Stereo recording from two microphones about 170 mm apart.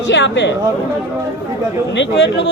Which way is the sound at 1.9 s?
90° left.